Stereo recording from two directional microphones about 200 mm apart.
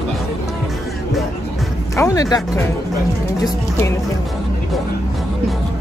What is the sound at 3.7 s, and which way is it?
Speech, 15° left (ahead or behind).